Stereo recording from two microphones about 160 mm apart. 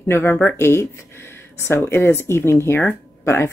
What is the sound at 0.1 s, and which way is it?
Speech, 10° left (ahead or behind).